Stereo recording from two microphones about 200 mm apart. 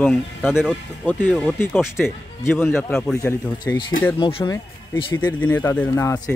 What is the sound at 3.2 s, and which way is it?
Speech, 15° left (ahead or behind).